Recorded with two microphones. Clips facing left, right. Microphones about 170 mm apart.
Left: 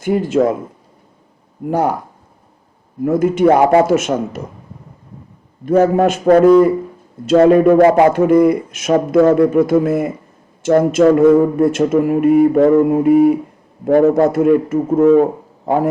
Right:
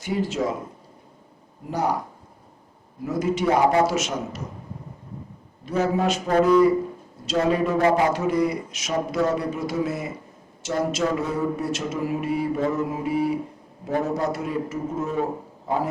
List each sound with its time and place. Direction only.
0.0 s speech: 55° left (ahead or behind)
1.7 s mantra: 55° left (ahead or behind)
3.0 s speech: 55° left (ahead or behind)
5.6 s speech: 55° left (ahead or behind)
12.5 s mantra: 55° left (ahead or behind)
13.8 s a man's voice: 55° left (ahead or behind)